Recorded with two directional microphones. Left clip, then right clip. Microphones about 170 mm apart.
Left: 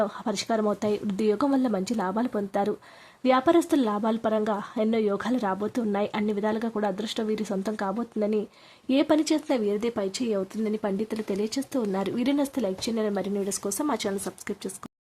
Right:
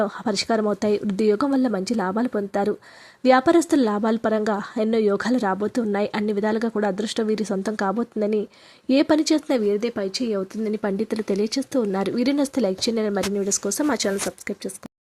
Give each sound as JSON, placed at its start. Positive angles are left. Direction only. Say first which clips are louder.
{"t": 0.0, "sound": "speech", "louder": "right 4 dB", "side_deg": -20}